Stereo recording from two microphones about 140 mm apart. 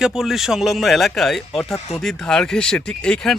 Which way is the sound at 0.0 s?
5° right (ahead or behind).